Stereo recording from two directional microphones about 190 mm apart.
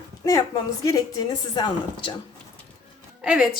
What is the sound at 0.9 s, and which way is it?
A woman's voice, 20° left (ahead or behind).